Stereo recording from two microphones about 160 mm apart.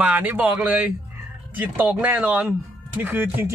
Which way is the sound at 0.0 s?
10° right (ahead or behind).